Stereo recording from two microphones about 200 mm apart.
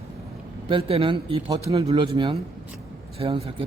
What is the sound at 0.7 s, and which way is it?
Speech, 25° right (ahead or behind).